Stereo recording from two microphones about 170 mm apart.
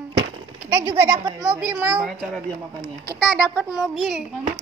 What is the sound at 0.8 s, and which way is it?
Speech, 25° right (ahead or behind).